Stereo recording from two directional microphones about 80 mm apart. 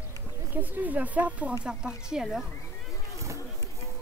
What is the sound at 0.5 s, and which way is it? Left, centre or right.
Speech, right.